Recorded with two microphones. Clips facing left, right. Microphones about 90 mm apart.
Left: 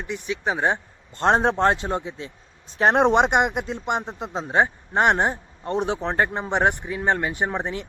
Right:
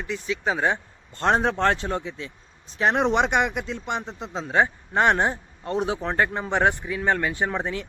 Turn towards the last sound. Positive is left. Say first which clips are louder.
# even
turn(degrees=20)  # may be behind; listen again after turning